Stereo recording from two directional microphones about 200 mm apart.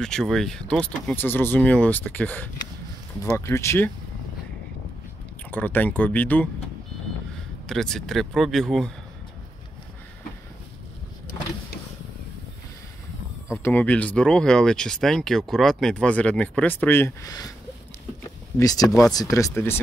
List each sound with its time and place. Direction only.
0.0 s speech: centre (ahead or behind)
5.5 s speech: 10° left (ahead or behind)
7.6 s speech: centre (ahead or behind)
13.5 s speech: 10° left (ahead or behind)
18.6 s speech: 20° left (ahead or behind)
18.9 s speech: centre (ahead or behind)
19.1 s speech: 15° left (ahead or behind)